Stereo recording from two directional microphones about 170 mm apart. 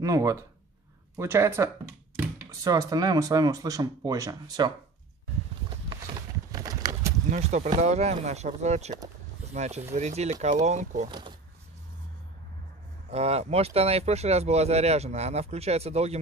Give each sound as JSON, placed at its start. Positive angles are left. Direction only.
{"t": 0.0, "sound": "speech", "side_deg": -20}
{"t": 5.7, "sound": "a sound", "side_deg": -25}
{"t": 7.2, "sound": "speech", "side_deg": -40}
{"t": 11.1, "sound": "speech", "side_deg": -30}
{"t": 13.1, "sound": "speech", "side_deg": -40}